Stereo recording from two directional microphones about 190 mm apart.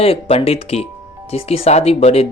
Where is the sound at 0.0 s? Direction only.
30° left (ahead or behind).